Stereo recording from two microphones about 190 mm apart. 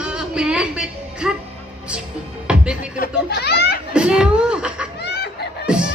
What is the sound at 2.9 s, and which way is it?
Belly laugh, 55° left (ahead or behind).